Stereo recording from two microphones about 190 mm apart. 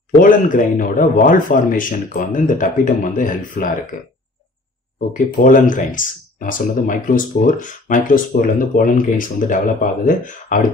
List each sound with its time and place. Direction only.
0.1 s speech: 45° left (ahead or behind)
5.1 s speech: 45° left (ahead or behind)